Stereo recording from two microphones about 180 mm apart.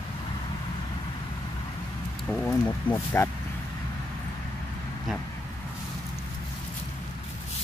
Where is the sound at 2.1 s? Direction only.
5° left (ahead or behind).